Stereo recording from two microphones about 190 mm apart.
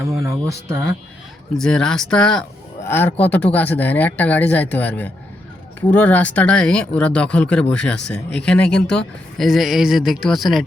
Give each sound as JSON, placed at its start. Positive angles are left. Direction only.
{"t": 0.2, "sound": "speech", "side_deg": -15}
{"t": 1.5, "sound": "speech", "side_deg": 5}